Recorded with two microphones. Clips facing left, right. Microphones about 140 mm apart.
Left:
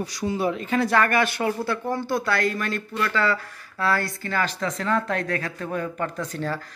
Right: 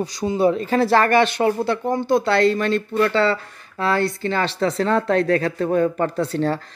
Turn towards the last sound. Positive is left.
turn(degrees=-30)  # may be behind; listen again after turning